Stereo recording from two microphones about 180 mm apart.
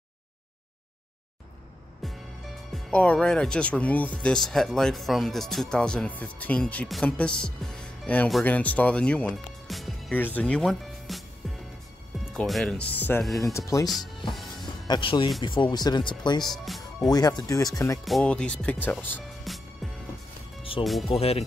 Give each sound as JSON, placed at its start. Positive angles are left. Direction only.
{"t": 2.0, "sound": "music", "side_deg": 0}
{"t": 4.2, "sound": "speech", "side_deg": 5}
{"t": 13.8, "sound": "speech", "side_deg": 0}
{"t": 14.3, "sound": "music", "side_deg": 0}
{"t": 14.9, "sound": "speech", "side_deg": 25}
{"t": 16.4, "sound": "speech", "side_deg": 0}
{"t": 17.1, "sound": "speech", "side_deg": 20}
{"t": 18.0, "sound": "speech", "side_deg": 5}
{"t": 21.1, "sound": "speech", "side_deg": 35}